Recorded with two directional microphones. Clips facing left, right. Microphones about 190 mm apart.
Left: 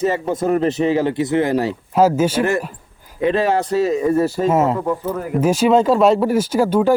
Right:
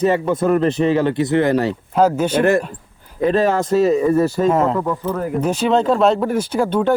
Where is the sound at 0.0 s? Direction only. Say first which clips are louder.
Right 2 dB; 60° right (ahead or behind).